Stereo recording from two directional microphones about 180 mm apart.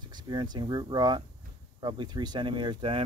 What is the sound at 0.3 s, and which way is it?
Speech, 25° right (ahead or behind).